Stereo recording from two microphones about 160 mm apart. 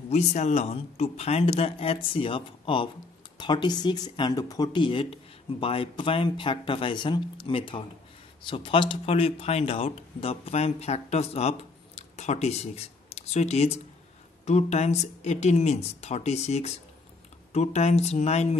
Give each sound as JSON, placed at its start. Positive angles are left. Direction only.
{"t": 0.1, "sound": "speech", "side_deg": 45}